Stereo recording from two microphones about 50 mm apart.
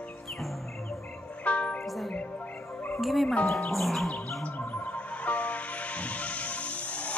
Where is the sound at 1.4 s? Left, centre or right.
Left.